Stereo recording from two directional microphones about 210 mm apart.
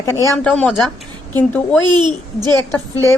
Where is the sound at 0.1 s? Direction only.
15° left (ahead or behind).